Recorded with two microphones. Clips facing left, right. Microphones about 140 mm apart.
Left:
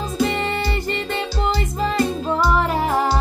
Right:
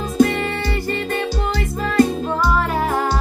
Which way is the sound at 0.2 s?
20° left (ahead or behind).